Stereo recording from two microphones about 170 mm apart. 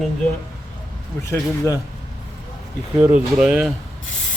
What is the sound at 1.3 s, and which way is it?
Speech, 20° left (ahead or behind).